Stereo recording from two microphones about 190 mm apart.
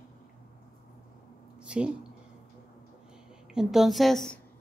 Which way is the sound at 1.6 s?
5° right (ahead or behind).